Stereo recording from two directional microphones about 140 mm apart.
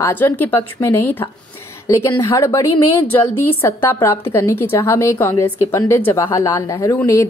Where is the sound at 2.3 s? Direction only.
20° left (ahead or behind).